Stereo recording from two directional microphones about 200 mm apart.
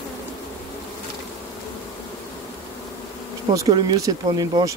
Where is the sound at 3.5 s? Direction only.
20° right (ahead or behind).